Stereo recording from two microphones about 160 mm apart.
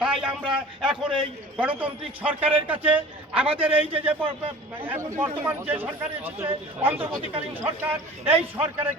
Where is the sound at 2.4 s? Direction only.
35° right (ahead or behind).